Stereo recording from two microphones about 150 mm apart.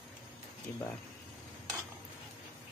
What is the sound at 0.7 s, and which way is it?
Speech, 10° left (ahead or behind).